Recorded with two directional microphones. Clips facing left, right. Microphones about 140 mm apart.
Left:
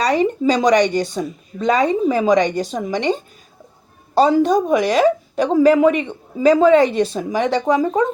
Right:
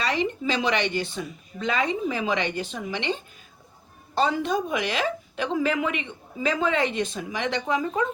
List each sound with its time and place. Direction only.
0.0 s a woman's voice: 40° left (ahead or behind)